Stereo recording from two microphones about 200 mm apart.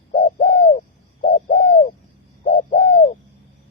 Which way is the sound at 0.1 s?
35° left (ahead or behind).